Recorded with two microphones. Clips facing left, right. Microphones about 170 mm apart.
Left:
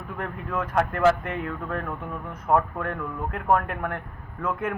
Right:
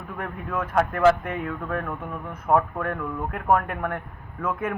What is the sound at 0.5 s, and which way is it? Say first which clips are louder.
A man's voice: right 1 dB; 5° right (ahead or behind).